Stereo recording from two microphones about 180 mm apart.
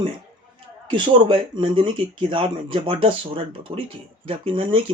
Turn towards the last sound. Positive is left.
turn(degrees=-30)  # may be behind; listen again after turning